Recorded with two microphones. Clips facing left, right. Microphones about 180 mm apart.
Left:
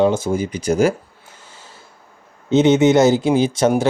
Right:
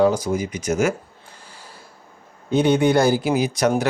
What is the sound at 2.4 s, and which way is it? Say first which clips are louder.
Speech: left 4 dB; 20° left (ahead or behind).